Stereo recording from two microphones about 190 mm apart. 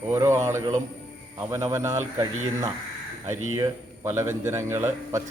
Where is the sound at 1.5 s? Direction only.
15° right (ahead or behind).